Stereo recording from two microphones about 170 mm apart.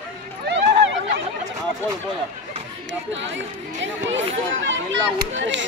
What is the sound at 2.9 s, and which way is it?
Speech, 90° right.